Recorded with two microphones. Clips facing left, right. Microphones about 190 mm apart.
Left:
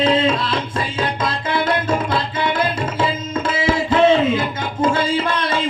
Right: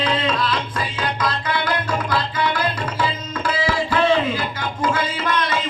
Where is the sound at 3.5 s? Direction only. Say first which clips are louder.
Left 3 dB; 25° left (ahead or behind).